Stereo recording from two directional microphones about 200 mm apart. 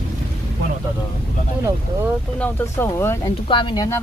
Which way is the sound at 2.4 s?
10° left (ahead or behind).